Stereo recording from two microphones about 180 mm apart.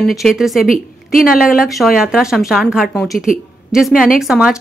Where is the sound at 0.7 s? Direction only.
55° left (ahead or behind).